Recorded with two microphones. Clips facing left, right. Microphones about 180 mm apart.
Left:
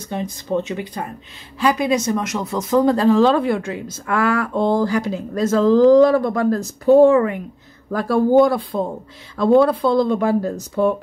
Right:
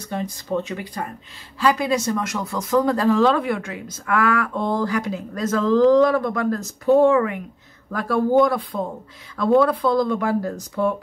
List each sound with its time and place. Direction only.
0.1 s speech: 20° left (ahead or behind)